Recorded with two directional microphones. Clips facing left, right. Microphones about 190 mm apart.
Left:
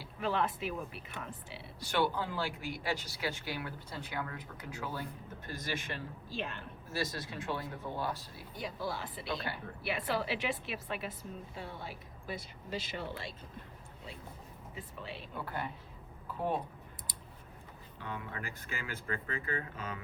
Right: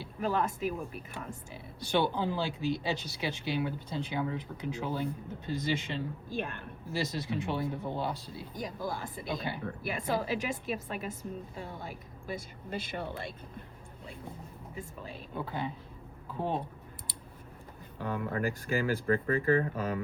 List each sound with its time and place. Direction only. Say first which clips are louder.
0.2 s a woman's voice: right 3 dB; 45° right (ahead or behind)
2.0 s speech: right 3 dB; 20° right (ahead or behind)
6.3 s a woman's voice: right 3 dB; 50° right (ahead or behind)
6.9 s speech: right 5 dB; 20° right (ahead or behind)
8.5 s a woman's voice: right 2 dB; 45° right (ahead or behind)
14.8 s a sound: right 2 dB; 45° right (ahead or behind)
15.4 s speech: right 5 dB; 20° right (ahead or behind)
17.9 s speech: right 9 dB; 40° right (ahead or behind)